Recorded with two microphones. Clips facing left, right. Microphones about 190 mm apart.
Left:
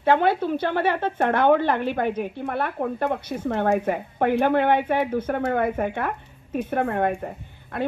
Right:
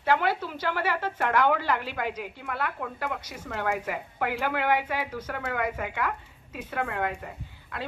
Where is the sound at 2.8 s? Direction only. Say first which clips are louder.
Left 9 dB; 50° left (ahead or behind).